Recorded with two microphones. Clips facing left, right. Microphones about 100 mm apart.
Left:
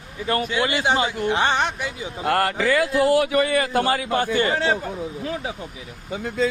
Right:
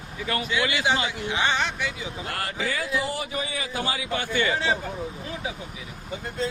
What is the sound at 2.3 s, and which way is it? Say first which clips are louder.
Speech: left 11 dB; 65° left (ahead or behind).